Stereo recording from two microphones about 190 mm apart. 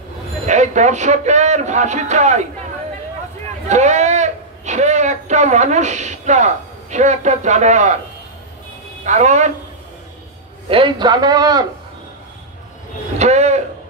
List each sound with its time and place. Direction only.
0.5 s speech: 40° right (ahead or behind)
3.6 s a man's voice: 40° right (ahead or behind)
9.0 s speech: 40° right (ahead or behind)
10.7 s a man's voice: 25° right (ahead or behind)
13.2 s a sound: 35° right (ahead or behind)